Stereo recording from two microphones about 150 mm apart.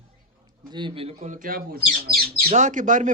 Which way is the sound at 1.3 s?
65° right (ahead or behind).